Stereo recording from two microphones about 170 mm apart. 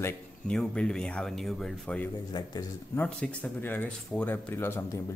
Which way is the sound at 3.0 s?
10° left (ahead or behind).